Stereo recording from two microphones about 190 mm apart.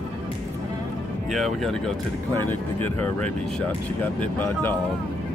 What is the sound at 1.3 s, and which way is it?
Speech, centre (ahead or behind).